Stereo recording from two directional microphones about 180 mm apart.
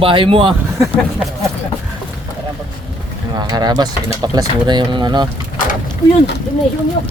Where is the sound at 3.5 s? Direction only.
25° right (ahead or behind).